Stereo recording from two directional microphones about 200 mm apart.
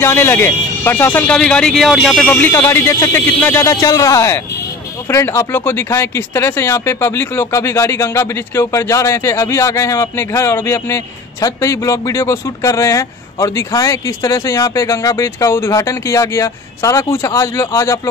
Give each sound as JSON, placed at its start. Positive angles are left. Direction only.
{"t": 0.0, "sound": "a man's voice", "side_deg": 10}